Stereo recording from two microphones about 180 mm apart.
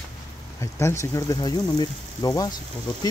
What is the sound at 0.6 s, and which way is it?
Speech, 15° left (ahead or behind).